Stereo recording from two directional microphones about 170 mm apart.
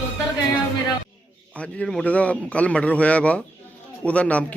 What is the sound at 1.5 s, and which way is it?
A man's voice, 5° left (ahead or behind).